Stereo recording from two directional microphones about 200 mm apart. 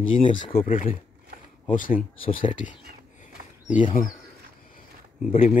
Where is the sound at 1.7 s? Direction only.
45° left (ahead or behind).